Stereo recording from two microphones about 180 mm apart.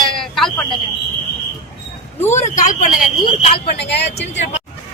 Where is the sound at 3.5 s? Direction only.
70° left (ahead or behind).